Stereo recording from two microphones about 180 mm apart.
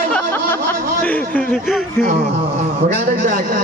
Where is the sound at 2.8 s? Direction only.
45° right (ahead or behind).